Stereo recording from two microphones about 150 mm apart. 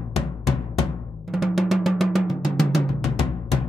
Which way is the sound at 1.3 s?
Centre (ahead or behind).